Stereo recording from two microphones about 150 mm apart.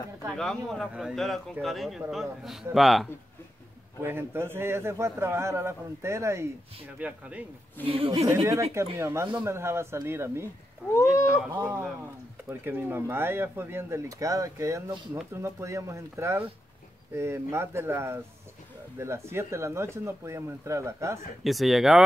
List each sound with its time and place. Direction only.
0.4 s a man's voice: 5° left (ahead or behind)
4.0 s a man's voice: 15° right (ahead or behind)
7.8 s a woman's voice: 40° right (ahead or behind)
8.7 s a man's voice: 20° right (ahead or behind)
10.9 s speech: 15° left (ahead or behind)
11.3 s a man's voice: 5° right (ahead or behind)
21.5 s a man's voice: centre (ahead or behind)